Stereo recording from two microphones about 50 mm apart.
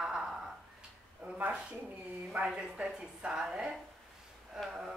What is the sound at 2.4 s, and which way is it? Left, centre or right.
A woman's voice, centre.